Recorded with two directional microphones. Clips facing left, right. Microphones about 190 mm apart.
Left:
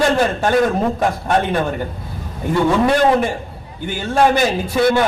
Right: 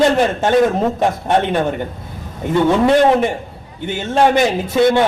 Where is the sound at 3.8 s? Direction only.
20° right (ahead or behind).